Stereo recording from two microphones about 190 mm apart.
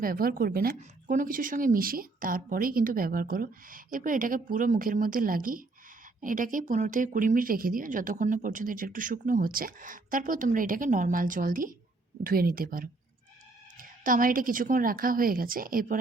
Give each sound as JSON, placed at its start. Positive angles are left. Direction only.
{"t": 0.0, "sound": "speech", "side_deg": -50}